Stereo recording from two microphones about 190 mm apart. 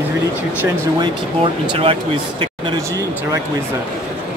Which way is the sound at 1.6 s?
30° right (ahead or behind).